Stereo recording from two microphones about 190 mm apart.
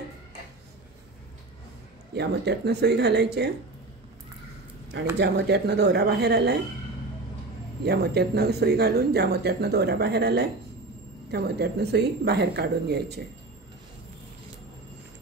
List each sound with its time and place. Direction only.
2.1 s speech: 60° right (ahead or behind)
5.1 s speech: 65° right (ahead or behind)
7.8 s speech: 60° right (ahead or behind)